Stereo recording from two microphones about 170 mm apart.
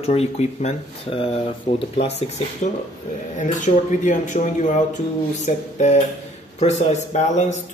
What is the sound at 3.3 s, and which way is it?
Speech, 45° left (ahead or behind).